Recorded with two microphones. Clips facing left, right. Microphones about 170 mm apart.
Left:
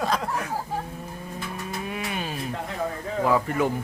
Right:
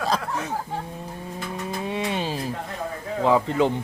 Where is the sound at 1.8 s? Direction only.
25° right (ahead or behind).